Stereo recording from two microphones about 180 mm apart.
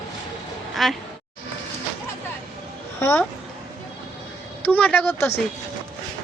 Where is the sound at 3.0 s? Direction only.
15° left (ahead or behind).